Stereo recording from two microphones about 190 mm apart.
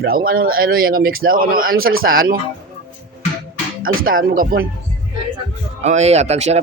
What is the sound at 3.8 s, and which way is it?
Speech, 50° right (ahead or behind).